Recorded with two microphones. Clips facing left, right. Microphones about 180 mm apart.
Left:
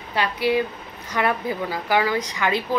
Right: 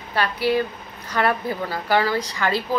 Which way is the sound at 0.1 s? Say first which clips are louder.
Even; 20° left (ahead or behind).